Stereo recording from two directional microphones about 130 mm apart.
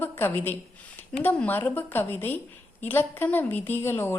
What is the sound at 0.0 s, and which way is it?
A woman's voice, 15° left (ahead or behind).